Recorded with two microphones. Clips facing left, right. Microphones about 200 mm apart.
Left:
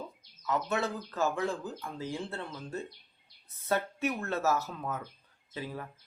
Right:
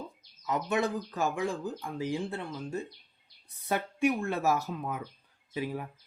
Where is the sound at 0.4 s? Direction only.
15° right (ahead or behind).